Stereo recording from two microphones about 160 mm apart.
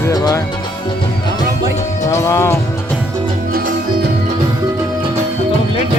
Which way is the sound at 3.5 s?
70° right (ahead or behind).